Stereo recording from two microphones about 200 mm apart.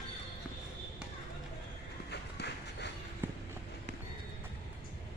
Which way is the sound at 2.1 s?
55° left (ahead or behind).